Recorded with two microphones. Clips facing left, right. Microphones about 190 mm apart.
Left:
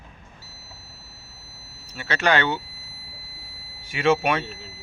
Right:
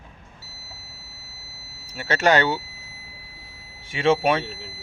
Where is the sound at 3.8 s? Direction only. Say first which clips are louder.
Right 1 dB; 30° right (ahead or behind).